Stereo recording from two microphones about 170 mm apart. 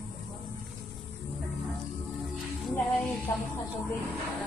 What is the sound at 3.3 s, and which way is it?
Speech, 15° left (ahead or behind).